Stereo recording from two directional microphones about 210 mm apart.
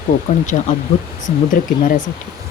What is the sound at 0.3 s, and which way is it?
Speech, 35° left (ahead or behind).